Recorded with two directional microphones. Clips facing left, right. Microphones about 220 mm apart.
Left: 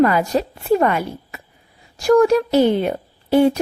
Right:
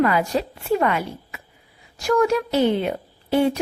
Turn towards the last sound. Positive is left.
turn(degrees=40)  # may be behind; listen again after turning